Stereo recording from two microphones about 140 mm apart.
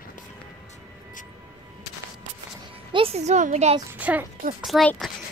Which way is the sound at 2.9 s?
45° right (ahead or behind).